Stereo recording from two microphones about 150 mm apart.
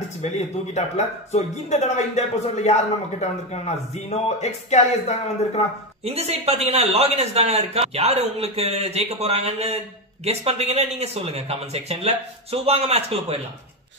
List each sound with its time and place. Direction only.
0.2 s speech: 50° left (ahead or behind)
6.0 s a man's voice: 45° right (ahead or behind)